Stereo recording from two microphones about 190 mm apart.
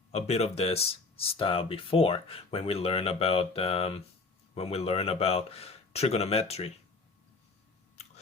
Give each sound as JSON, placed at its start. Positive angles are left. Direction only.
{"t": 0.1, "sound": "speech", "side_deg": 35}